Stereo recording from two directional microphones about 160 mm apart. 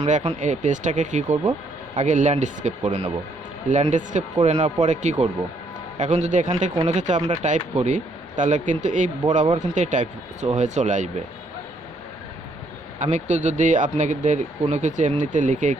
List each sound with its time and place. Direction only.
0.0 s speech: 40° right (ahead or behind)
0.3 s speech: 50° right (ahead or behind)
13.0 s speech: 45° right (ahead or behind)